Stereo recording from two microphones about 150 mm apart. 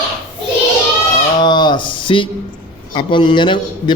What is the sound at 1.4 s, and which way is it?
A man's voice, 30° left (ahead or behind).